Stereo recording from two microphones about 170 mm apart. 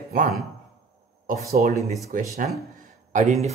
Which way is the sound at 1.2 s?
55° right (ahead or behind).